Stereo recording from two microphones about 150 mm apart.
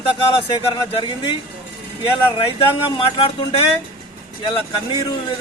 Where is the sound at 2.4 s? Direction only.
35° left (ahead or behind).